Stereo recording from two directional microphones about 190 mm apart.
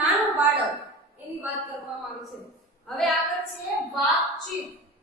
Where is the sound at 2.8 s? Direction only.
Centre (ahead or behind).